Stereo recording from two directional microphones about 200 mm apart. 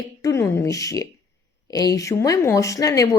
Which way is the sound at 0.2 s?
15° left (ahead or behind).